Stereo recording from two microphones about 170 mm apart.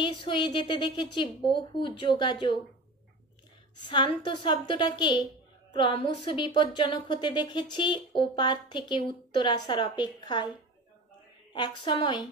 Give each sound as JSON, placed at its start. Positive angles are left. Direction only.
{"t": 0.0, "sound": "speech", "side_deg": 30}
{"t": 3.7, "sound": "speech", "side_deg": 25}
{"t": 11.5, "sound": "speech", "side_deg": 25}